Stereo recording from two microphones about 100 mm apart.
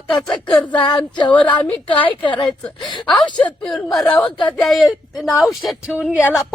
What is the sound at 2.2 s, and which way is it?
Female singing, 55° left (ahead or behind).